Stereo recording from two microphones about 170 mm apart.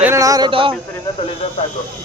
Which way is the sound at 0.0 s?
15° right (ahead or behind).